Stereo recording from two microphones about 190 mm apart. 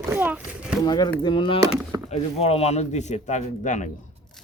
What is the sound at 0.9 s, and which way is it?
Speech, 20° left (ahead or behind).